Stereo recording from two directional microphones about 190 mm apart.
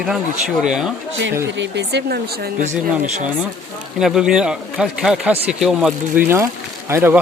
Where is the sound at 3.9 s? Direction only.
5° right (ahead or behind).